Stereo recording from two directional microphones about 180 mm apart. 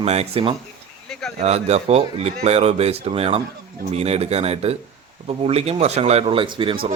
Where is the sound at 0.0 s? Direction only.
35° right (ahead or behind).